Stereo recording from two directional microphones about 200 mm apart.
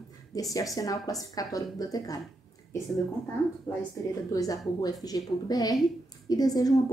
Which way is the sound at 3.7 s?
15° left (ahead or behind).